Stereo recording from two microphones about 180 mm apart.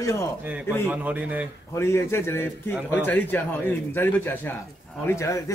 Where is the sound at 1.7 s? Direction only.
15° left (ahead or behind).